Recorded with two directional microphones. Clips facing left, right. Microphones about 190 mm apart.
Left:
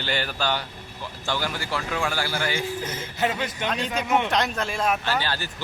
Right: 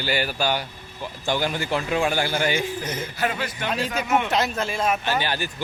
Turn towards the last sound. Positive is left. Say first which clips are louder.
# right 2 dB
turn(degrees=-15)  # may be behind; listen again after turning